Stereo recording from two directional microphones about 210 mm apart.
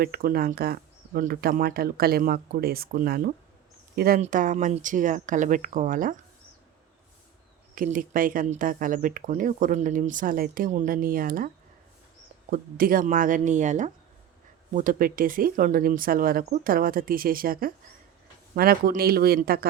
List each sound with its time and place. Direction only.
0.0 s speech: 45° right (ahead or behind)
7.8 s speech: 40° right (ahead or behind)